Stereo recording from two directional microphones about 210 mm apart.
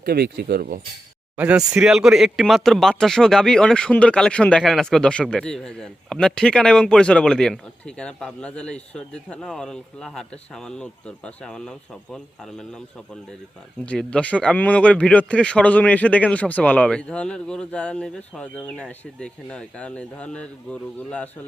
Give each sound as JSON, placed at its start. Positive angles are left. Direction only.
{"t": 0.0, "sound": "speech", "side_deg": -50}
{"t": 1.4, "sound": "speech", "side_deg": -5}
{"t": 13.8, "sound": "speech", "side_deg": 5}